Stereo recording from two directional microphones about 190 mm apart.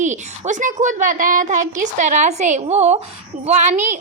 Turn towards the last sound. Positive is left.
turn(degrees=-40)  # may be behind; listen again after turning